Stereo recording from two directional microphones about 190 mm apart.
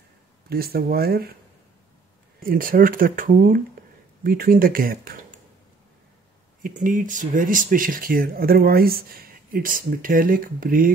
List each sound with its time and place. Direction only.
0.5 s speech: 55° right (ahead or behind)
2.4 s speech: 50° right (ahead or behind)
6.6 s speech: 45° right (ahead or behind)